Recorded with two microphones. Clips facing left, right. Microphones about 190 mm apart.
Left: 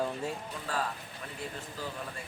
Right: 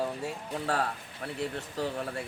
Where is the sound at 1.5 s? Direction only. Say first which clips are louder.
Right 7 dB; 70° right (ahead or behind).